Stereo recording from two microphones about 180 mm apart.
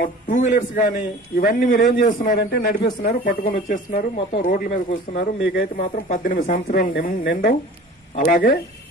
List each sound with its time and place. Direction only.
0.0 s speech: 50° left (ahead or behind)
6.7 s speech: 55° left (ahead or behind)